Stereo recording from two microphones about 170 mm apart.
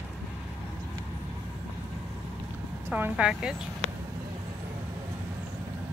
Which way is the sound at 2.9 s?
10° right (ahead or behind).